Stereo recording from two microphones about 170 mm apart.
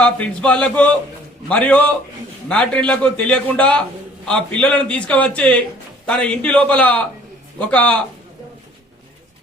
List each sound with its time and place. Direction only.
0.0 s a man's voice: 5° left (ahead or behind)